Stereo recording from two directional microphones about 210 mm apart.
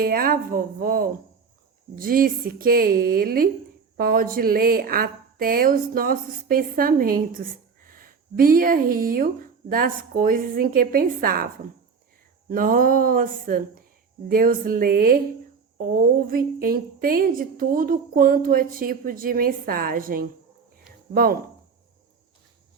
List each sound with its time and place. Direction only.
0.0 s speech: 45° right (ahead or behind)
12.5 s speech: 40° right (ahead or behind)